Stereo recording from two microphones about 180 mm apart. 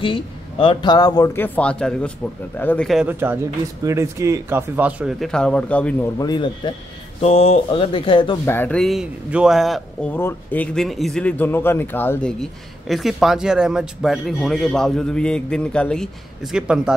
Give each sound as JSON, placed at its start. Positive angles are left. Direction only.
{"t": 0.0, "sound": "speech", "side_deg": 30}
{"t": 3.1, "sound": "speech", "side_deg": -10}
{"t": 6.1, "sound": "speech", "side_deg": 20}
{"t": 8.5, "sound": "speech", "side_deg": 10}
{"t": 10.1, "sound": "speech", "side_deg": 10}